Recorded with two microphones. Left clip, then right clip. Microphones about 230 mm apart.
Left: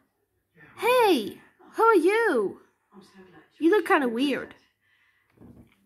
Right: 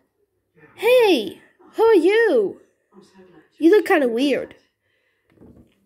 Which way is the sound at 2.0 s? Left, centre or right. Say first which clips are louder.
Right 6 dB; left.